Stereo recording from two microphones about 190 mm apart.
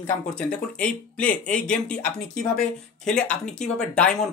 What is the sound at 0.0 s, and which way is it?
Speech, 5° left (ahead or behind).